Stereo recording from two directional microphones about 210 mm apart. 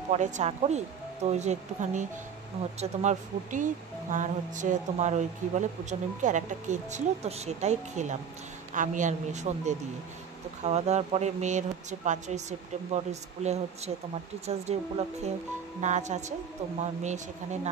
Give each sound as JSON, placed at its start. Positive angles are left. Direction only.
{"t": 0.1, "sound": "speech", "side_deg": -35}
{"t": 15.8, "sound": "speech", "side_deg": -35}